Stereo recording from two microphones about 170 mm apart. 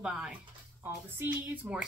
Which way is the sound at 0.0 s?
5° right (ahead or behind).